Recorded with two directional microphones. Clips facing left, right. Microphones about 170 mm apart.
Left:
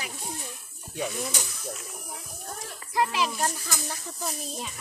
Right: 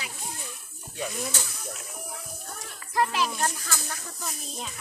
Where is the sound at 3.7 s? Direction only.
15° left (ahead or behind).